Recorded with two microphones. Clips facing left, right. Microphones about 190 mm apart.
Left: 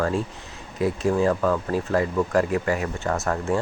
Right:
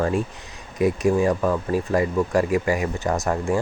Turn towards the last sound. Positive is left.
turn(degrees=-15)  # may be behind; listen again after turning